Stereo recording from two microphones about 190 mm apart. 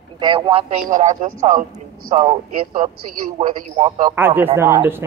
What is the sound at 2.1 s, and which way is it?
Speech, 30° right (ahead or behind).